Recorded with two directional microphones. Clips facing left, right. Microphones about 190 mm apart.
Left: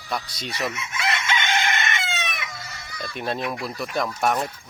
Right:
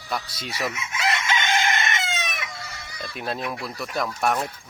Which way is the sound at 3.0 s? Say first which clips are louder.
Left 2 dB; centre (ahead or behind).